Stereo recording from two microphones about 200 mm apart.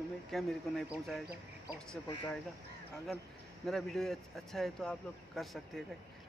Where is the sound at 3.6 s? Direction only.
Centre (ahead or behind).